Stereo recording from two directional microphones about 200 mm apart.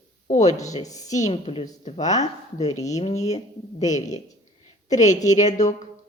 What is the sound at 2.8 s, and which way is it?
Speech, 35° left (ahead or behind).